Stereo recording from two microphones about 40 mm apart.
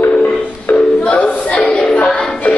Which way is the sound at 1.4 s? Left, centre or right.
Left.